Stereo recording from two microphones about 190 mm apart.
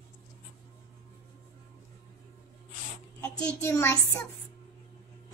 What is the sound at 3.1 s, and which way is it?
Speech, 15° left (ahead or behind).